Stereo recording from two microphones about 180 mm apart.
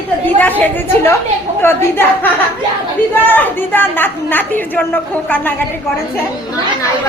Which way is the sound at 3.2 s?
10° left (ahead or behind).